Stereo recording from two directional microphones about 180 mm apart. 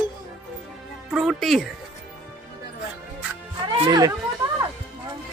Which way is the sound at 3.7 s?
25° right (ahead or behind).